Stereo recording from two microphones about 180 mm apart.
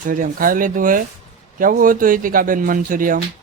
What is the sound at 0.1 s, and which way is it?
Speech, 50° right (ahead or behind).